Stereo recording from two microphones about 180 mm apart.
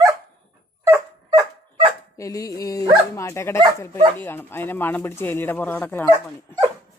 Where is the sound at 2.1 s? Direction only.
20° left (ahead or behind).